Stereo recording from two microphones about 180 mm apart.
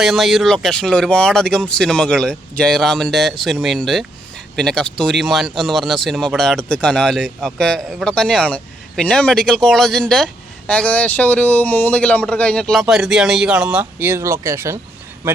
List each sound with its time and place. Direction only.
0.0 s speech: centre (ahead or behind)